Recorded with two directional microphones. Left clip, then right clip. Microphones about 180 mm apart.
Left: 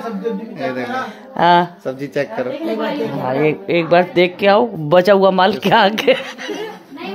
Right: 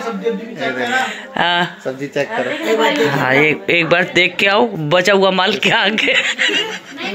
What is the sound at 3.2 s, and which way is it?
Speech, 5° right (ahead or behind).